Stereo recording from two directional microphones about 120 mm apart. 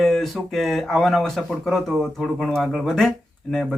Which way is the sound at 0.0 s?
Centre (ahead or behind).